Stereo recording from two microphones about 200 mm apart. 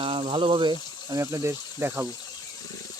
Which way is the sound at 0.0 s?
30° right (ahead or behind).